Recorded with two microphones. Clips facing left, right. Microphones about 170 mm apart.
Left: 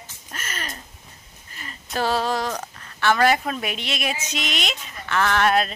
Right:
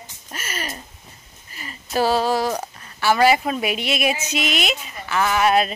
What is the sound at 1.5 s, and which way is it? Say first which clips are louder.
A child's voice: right 5 dB; 5° right (ahead or behind).